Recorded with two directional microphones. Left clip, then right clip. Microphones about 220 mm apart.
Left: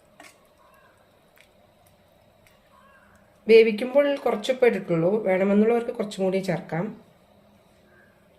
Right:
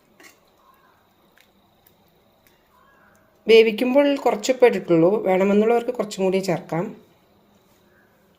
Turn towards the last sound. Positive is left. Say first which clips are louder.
# right 4 dB
turn(degrees=-30)  # may be behind; listen again after turning